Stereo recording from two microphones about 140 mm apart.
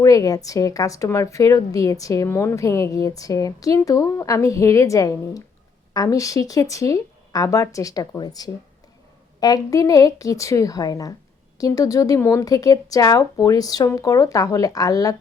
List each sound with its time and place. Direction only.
0.0 s a woman's voice: 25° left (ahead or behind)